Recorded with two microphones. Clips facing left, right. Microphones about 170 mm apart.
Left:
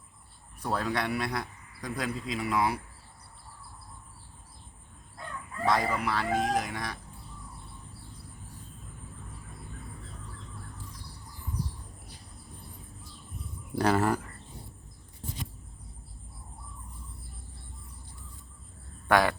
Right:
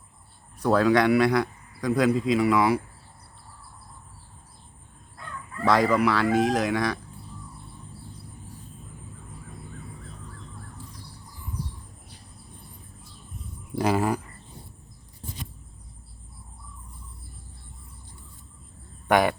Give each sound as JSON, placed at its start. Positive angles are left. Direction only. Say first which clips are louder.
{"t": 0.6, "sound": "speech", "louder": "right 11 dB", "side_deg": -90}
{"t": 5.6, "sound": "speech", "louder": "right 7 dB", "side_deg": -90}
{"t": 13.7, "sound": "speech", "louder": "right 2 dB", "side_deg": -10}
{"t": 19.0, "sound": "speech", "louder": "right 3 dB", "side_deg": -20}